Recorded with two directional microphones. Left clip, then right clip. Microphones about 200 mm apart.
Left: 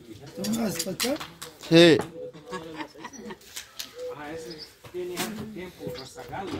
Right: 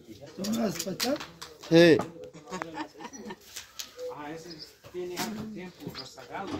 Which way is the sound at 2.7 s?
50° right (ahead or behind).